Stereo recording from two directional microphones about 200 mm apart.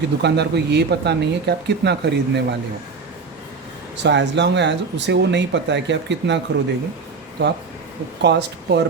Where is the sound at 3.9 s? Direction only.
60° right (ahead or behind).